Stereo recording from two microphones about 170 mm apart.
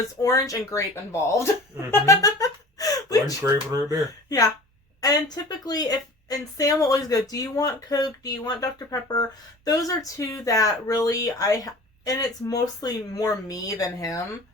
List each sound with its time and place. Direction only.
0.2 s speech: 20° left (ahead or behind)
1.9 s a sound: 20° left (ahead or behind)
3.4 s speech: 20° right (ahead or behind)
4.3 s speech: 20° left (ahead or behind)